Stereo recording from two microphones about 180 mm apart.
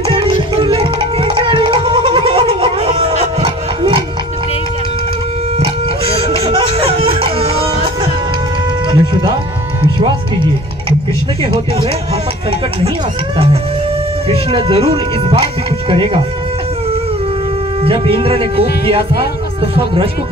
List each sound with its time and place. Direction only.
0.1 s music: 30° right (ahead or behind)
5.6 s music: 30° right (ahead or behind)
8.9 s music: 25° right (ahead or behind)
11.4 s speech: 30° right (ahead or behind)
14.3 s speech: 30° right (ahead or behind)
17.8 s speech: 30° right (ahead or behind)